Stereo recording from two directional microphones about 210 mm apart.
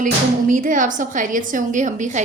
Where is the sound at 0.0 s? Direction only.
40° right (ahead or behind).